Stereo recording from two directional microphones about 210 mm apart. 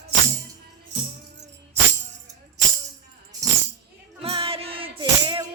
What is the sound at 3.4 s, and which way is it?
Tambourine, 15° right (ahead or behind).